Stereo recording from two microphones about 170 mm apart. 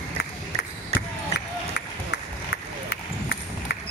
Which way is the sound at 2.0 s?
70° left (ahead or behind).